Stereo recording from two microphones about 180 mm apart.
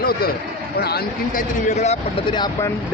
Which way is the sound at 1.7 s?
40° left (ahead or behind).